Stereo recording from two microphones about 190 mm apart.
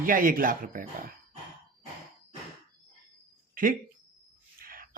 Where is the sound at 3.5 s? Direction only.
45° right (ahead or behind).